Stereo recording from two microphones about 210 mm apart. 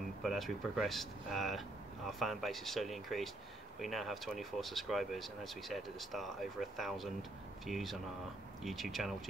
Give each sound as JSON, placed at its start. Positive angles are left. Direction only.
{"t": 0.2, "sound": "speech", "side_deg": 0}